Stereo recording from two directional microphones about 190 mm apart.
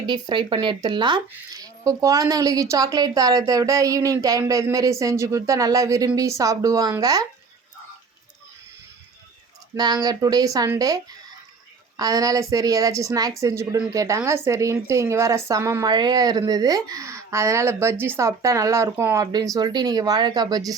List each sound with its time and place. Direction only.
0.1 s a woman's voice: 25° right (ahead or behind)
9.7 s a woman's voice: 20° right (ahead or behind)